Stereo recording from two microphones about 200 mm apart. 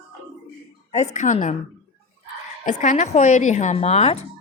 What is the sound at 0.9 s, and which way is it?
Speech, 35° left (ahead or behind).